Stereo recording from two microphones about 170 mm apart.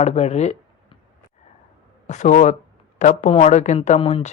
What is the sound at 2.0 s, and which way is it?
Speech, 45° left (ahead or behind).